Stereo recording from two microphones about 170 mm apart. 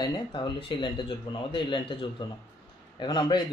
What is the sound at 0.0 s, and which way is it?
A man's voice, 25° left (ahead or behind).